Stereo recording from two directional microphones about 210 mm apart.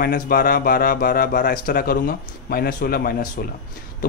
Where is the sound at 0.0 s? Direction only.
45° left (ahead or behind).